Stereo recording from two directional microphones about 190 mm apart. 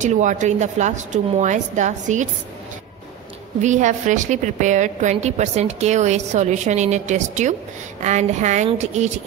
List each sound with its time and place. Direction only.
0.0 s a woman's voice: 40° right (ahead or behind)
3.6 s a woman's voice: 40° right (ahead or behind)